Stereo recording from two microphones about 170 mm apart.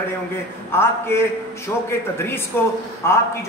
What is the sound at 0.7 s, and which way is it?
A man's voice, 15° left (ahead or behind).